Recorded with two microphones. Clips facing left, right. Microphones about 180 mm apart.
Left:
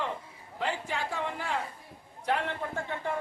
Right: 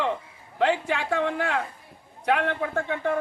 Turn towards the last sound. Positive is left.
turn(degrees=-70)  # may be behind; listen again after turning